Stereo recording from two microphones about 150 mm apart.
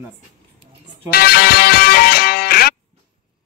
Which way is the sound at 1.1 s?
90° left.